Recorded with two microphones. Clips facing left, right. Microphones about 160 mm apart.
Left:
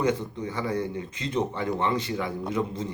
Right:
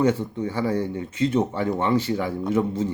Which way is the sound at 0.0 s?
30° right (ahead or behind).